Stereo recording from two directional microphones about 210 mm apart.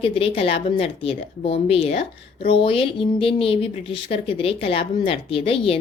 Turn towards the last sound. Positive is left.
turn(degrees=25)  # may be behind; listen again after turning